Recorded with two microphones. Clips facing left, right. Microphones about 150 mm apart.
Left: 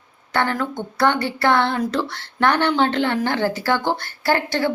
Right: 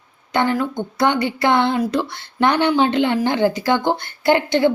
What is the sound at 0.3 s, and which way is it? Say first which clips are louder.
A woman's voice: right 3 dB; 15° right (ahead or behind).